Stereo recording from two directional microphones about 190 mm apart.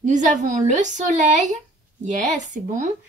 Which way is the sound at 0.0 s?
40° right (ahead or behind).